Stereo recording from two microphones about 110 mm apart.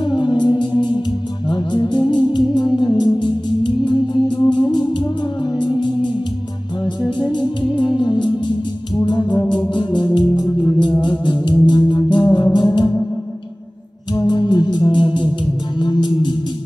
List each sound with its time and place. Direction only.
0.0 s music: 45° left (ahead or behind)
7.0 s music: 45° left (ahead or behind)
14.1 s music: 40° left (ahead or behind)